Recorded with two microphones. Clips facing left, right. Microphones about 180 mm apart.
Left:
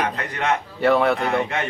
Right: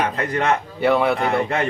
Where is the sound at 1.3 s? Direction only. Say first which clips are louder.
Right 2 dB; 35° right (ahead or behind).